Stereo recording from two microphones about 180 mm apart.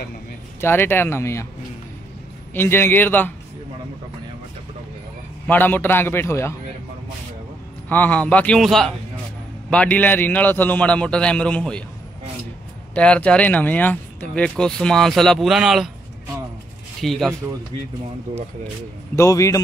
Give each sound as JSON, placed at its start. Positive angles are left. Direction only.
{"t": 0.6, "sound": "a man's voice", "side_deg": 10}
{"t": 2.5, "sound": "a man's voice", "side_deg": 10}
{"t": 5.5, "sound": "a man's voice", "side_deg": 10}
{"t": 7.9, "sound": "a man's voice", "side_deg": 10}
{"t": 12.9, "sound": "speech", "side_deg": 5}
{"t": 17.0, "sound": "speech", "side_deg": 0}
{"t": 19.1, "sound": "a man's voice", "side_deg": 15}